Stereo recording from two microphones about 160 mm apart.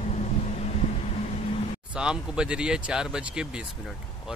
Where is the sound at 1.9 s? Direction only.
5° right (ahead or behind).